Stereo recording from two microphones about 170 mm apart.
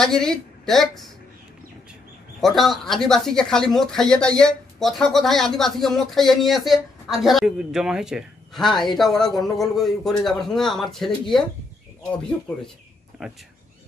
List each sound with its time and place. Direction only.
0.0 s a woman's voice: 5° left (ahead or behind)
2.4 s speech: centre (ahead or behind)
13.2 s speech: centre (ahead or behind)